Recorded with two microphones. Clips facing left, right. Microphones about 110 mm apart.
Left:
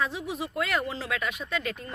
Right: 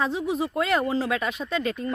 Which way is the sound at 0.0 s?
30° right (ahead or behind).